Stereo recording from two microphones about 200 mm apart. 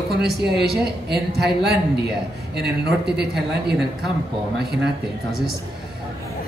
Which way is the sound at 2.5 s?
55° right (ahead or behind).